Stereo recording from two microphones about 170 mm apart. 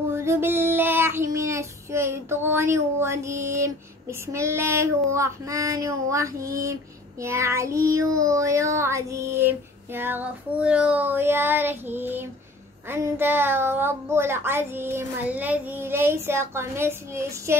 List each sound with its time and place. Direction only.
0.1 s child singing: 15° right (ahead or behind)